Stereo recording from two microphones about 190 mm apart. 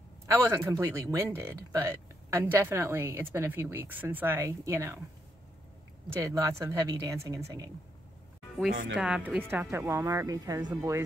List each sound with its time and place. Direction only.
0.3 s speech: 15° right (ahead or behind)
6.2 s speech: 15° right (ahead or behind)
8.9 s speech: 5° right (ahead or behind)